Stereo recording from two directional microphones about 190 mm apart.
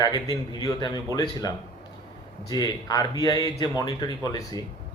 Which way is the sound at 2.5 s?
20° left (ahead or behind).